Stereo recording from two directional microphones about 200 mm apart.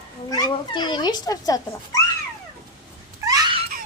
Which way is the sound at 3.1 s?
15° right (ahead or behind).